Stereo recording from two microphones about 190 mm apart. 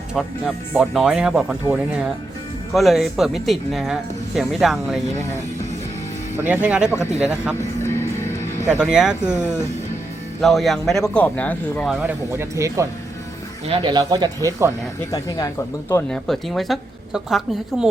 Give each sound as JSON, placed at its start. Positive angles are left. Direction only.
{"t": 0.1, "sound": "a woman's voice", "side_deg": 0}
{"t": 6.3, "sound": "speech", "side_deg": -10}
{"t": 7.6, "sound": "music", "side_deg": 15}
{"t": 8.8, "sound": "a woman's voice", "side_deg": -5}
{"t": 9.2, "sound": "speech", "side_deg": 10}
{"t": 10.4, "sound": "a woman's voice", "side_deg": 0}
{"t": 12.0, "sound": "speech", "side_deg": -15}
{"t": 13.7, "sound": "speech", "side_deg": -25}
{"t": 15.1, "sound": "speech", "side_deg": 15}
{"t": 16.0, "sound": "a woman's voice", "side_deg": 5}